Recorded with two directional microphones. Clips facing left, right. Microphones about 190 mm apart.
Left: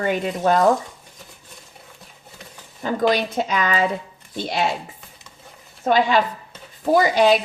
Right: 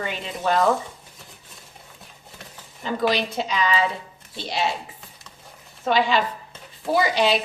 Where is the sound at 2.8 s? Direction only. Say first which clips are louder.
Left 3 dB; 50° left (ahead or behind).